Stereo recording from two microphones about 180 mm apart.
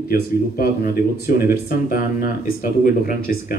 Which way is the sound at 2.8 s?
50° left (ahead or behind).